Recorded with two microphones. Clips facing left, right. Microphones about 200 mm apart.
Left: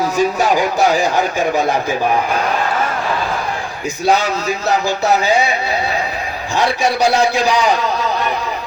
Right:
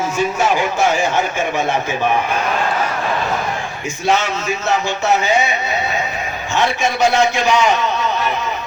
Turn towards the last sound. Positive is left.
turn(degrees=35)  # may be behind; listen again after turning